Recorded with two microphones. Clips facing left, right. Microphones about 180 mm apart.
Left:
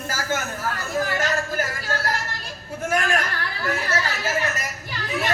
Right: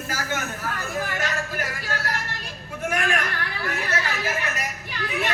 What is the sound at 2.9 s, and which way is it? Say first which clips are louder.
Chatter: left 2 dB; 40° left (ahead or behind).